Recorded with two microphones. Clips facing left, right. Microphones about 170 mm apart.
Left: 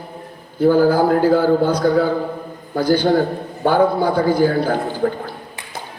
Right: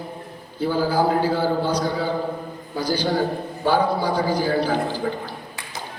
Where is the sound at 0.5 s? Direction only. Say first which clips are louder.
Left 8 dB; 50° left (ahead or behind).